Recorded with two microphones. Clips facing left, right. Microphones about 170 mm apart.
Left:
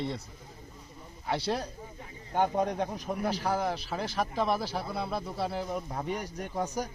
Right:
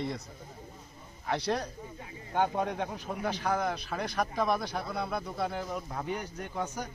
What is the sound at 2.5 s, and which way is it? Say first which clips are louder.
Speech: left 3 dB; 35° left (ahead or behind).